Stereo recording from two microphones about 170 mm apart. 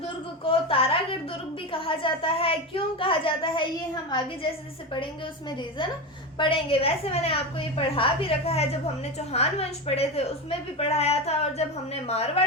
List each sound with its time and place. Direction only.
0.4 s a woman's voice: 35° left (ahead or behind)
5.5 s a woman's voice: 25° left (ahead or behind)